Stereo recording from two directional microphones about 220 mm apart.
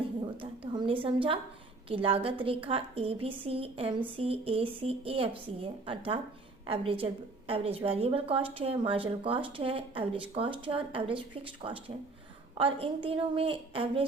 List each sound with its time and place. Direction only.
0.3 s speech: 25° right (ahead or behind)